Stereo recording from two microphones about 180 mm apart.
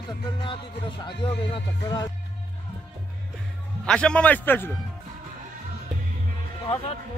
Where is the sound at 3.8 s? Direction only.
5° left (ahead or behind).